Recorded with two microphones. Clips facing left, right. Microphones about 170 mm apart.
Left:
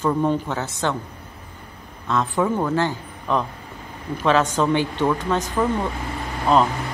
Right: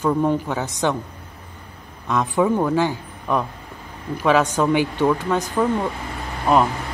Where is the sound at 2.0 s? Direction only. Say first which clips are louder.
Right 2 dB; 15° right (ahead or behind).